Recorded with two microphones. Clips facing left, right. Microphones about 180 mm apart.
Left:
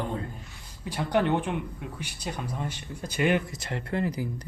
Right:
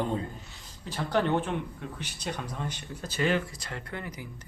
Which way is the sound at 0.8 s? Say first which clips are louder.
Left 2 dB; 15° left (ahead or behind).